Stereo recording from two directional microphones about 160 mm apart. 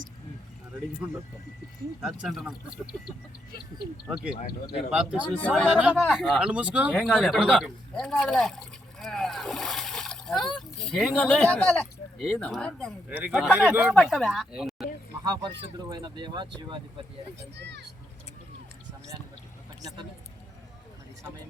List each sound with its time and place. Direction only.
2.0 s speech: centre (ahead or behind)
4.0 s speech: 5° right (ahead or behind)
5.4 s speech: 5° left (ahead or behind)
5.7 s speech: 10° right (ahead or behind)
13.1 s speech: 10° right (ahead or behind)
13.9 s speech: centre (ahead or behind)
15.2 s speech: 25° right (ahead or behind)
17.6 s a child's voice: 90° right